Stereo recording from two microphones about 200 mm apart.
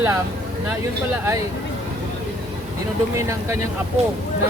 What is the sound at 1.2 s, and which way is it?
Speech, 15° right (ahead or behind).